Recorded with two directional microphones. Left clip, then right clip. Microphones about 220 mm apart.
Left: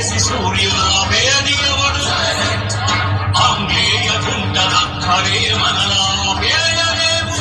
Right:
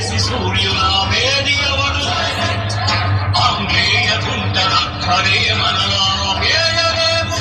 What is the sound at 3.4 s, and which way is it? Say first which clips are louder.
Music: left 1 dB; 20° left (ahead or behind).